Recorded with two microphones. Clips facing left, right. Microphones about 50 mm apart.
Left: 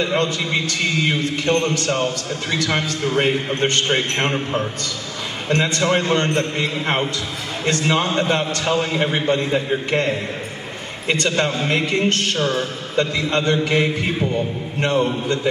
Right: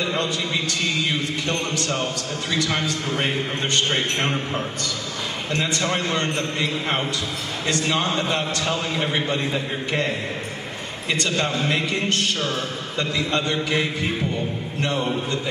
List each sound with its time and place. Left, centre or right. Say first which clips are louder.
0.1 s a man's voice: left 4 dB; left
5.5 s a man's voice: left 6 dB; left
7.6 s a man's voice: left 4 dB; left
11.1 s a man's voice: left 4 dB; left
14.8 s a man's voice: left 6 dB; left